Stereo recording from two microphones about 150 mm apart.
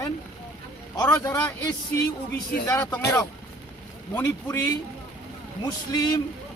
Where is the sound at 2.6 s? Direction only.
20° left (ahead or behind).